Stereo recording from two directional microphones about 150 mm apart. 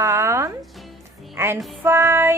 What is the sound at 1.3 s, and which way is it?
Music, 15° right (ahead or behind).